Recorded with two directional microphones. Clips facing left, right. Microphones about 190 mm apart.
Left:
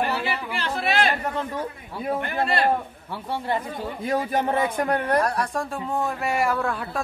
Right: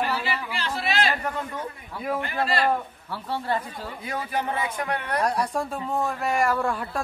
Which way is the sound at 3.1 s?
20° left (ahead or behind).